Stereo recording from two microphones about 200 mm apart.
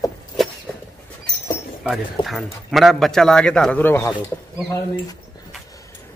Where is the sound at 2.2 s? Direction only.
Centre (ahead or behind).